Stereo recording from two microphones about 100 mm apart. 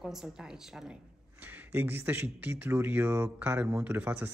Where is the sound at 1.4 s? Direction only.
20° right (ahead or behind).